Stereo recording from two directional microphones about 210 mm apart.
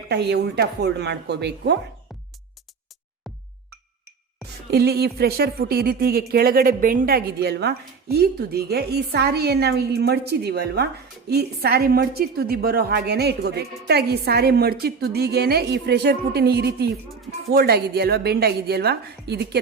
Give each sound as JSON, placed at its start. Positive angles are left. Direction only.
{"t": 0.1, "sound": "a woman's voice", "side_deg": -50}
{"t": 4.7, "sound": "a woman's voice", "side_deg": -50}